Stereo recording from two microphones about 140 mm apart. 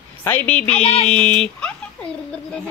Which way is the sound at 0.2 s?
10° left (ahead or behind).